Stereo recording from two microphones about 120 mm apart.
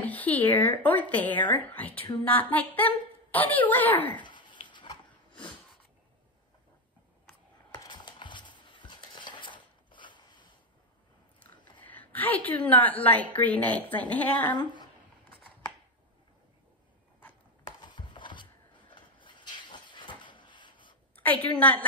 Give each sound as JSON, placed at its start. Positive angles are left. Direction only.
{"t": 0.0, "sound": "a woman's voice", "side_deg": 15}
{"t": 4.2, "sound": "dog", "side_deg": 40}
{"t": 7.7, "sound": "a sound", "side_deg": 40}
{"t": 11.8, "sound": "a woman's voice", "side_deg": 15}
{"t": 17.6, "sound": "a sound", "side_deg": 40}
{"t": 21.2, "sound": "a woman's voice", "side_deg": 15}